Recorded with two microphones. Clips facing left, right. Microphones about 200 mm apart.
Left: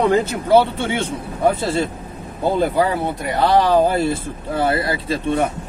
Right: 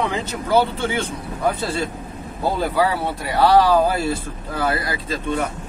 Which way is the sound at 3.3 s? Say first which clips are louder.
Right 1 dB; 20° left (ahead or behind).